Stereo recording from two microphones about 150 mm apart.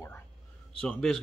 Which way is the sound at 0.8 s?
5° left (ahead or behind).